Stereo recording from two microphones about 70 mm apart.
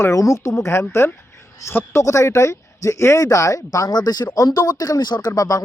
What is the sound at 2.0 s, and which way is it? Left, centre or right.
Speech, left.